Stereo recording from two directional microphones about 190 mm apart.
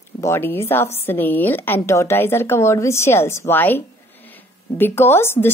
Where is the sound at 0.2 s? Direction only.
15° left (ahead or behind).